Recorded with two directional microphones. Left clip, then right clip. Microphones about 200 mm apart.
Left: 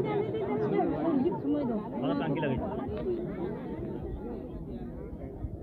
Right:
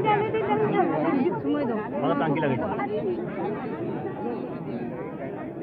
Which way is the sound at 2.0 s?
20° right (ahead or behind).